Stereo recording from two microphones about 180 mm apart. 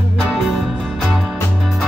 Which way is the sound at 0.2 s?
Centre (ahead or behind).